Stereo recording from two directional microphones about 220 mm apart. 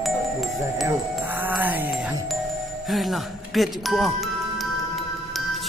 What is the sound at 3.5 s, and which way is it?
Speech, centre (ahead or behind).